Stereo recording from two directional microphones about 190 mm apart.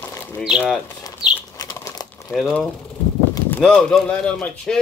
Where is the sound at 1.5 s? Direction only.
20° left (ahead or behind).